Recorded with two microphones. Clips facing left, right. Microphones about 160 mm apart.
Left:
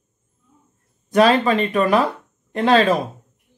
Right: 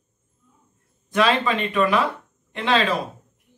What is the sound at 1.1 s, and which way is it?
Speech, 40° left (ahead or behind).